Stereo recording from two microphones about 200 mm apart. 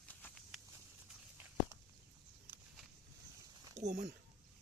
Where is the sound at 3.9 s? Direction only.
50° right (ahead or behind).